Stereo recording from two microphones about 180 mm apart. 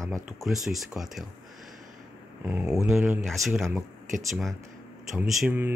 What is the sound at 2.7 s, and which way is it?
Speech, 5° right (ahead or behind).